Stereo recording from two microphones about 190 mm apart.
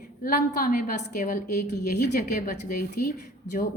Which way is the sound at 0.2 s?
50° left (ahead or behind).